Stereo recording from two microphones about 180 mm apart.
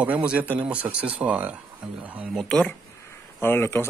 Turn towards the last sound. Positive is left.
turn(degrees=15)  # may be behind; listen again after turning